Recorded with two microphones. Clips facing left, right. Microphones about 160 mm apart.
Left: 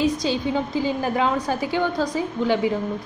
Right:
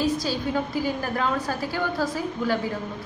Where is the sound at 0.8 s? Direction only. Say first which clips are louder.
Left 4 dB; 20° left (ahead or behind).